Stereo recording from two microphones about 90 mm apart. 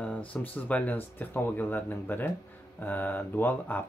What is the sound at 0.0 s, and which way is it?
Speech, 15° left (ahead or behind).